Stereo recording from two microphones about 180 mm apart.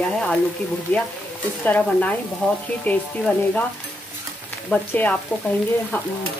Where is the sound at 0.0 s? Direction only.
5° left (ahead or behind).